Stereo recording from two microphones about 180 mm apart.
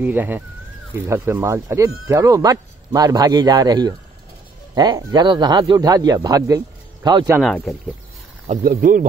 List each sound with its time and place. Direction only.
0.0 s speech: 10° right (ahead or behind)
7.4 s speech: centre (ahead or behind)
8.6 s speech: 50° right (ahead or behind)